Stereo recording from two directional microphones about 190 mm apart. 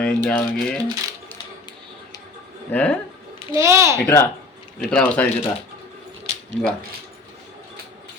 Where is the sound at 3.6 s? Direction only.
15° right (ahead or behind).